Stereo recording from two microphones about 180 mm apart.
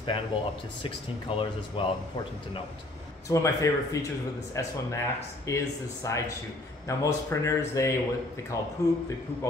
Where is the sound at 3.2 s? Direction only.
15° left (ahead or behind).